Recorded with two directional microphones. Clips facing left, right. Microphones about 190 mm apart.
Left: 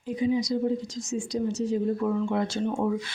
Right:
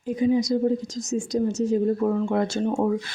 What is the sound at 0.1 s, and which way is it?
A woman's voice, 50° right (ahead or behind).